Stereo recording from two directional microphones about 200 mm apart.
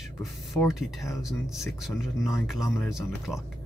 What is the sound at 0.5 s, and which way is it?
Speech, centre (ahead or behind).